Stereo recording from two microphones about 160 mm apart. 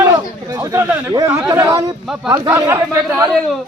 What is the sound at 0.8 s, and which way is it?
Speech, 20° right (ahead or behind).